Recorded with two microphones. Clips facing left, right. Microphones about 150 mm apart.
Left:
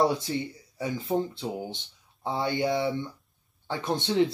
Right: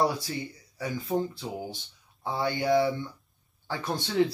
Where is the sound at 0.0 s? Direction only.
25° left (ahead or behind).